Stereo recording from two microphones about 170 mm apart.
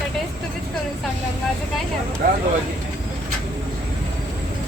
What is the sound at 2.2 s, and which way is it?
Speech, 50° right (ahead or behind).